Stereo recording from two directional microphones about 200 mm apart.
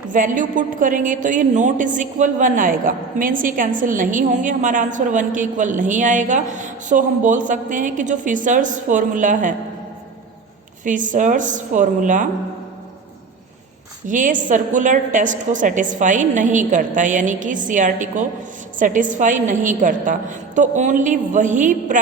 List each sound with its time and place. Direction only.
0.1 s a woman's voice: 40° right (ahead or behind)
10.8 s a woman's voice: 40° right (ahead or behind)
14.1 s a woman's voice: 40° right (ahead or behind)